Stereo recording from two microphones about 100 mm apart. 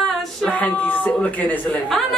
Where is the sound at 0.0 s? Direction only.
Centre (ahead or behind).